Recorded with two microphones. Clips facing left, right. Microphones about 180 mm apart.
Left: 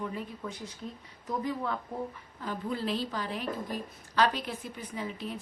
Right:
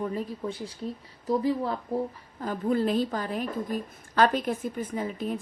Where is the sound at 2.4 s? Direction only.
45° right (ahead or behind).